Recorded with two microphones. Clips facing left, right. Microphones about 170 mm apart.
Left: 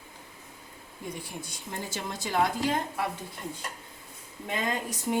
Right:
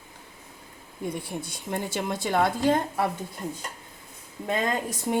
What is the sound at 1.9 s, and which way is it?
Speech, 60° right (ahead or behind).